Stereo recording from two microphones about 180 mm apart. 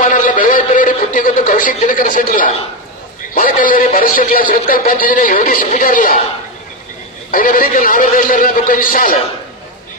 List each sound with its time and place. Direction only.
0.0 s a sound: 45° left (ahead or behind)
3.3 s speech: 50° left (ahead or behind)
7.2 s speech: 50° left (ahead or behind)